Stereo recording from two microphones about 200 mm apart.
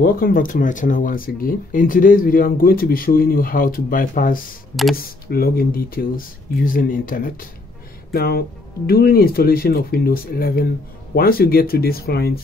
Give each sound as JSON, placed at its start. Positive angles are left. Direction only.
{"t": 0.0, "sound": "speech", "side_deg": 45}